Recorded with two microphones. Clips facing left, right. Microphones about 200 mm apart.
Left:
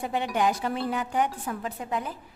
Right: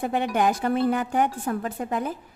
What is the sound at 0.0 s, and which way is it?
Speech, 55° right (ahead or behind).